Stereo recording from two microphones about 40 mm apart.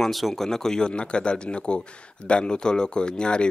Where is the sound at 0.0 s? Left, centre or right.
Centre.